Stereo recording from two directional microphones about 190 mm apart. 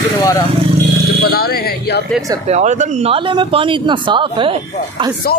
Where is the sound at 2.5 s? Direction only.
40° right (ahead or behind).